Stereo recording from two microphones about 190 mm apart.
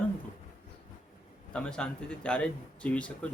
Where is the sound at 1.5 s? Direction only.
5° left (ahead or behind).